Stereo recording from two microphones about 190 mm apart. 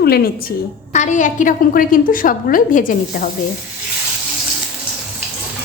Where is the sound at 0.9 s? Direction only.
40° left (ahead or behind).